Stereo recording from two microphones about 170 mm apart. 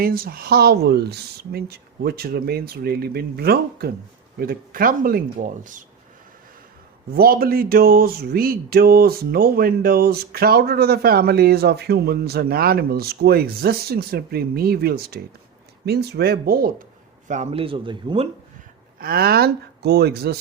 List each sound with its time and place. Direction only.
0.0 s speech: 60° right (ahead or behind)
7.1 s speech: 60° right (ahead or behind)
17.2 s speech: 40° right (ahead or behind)
18.9 s speech: 60° right (ahead or behind)